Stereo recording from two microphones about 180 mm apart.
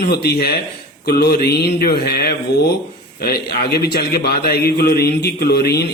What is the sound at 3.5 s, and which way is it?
A man's voice, 60° left (ahead or behind).